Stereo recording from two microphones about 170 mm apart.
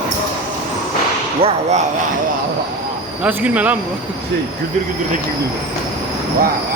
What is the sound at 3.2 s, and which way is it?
Speech, 10° right (ahead or behind).